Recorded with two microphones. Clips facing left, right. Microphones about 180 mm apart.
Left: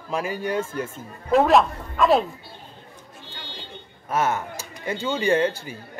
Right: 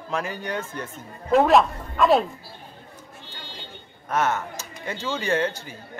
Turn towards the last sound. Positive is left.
turn(degrees=10)  # may be behind; listen again after turning